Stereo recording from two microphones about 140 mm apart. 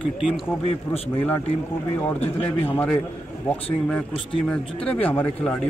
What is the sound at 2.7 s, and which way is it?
Speech, 10° left (ahead or behind).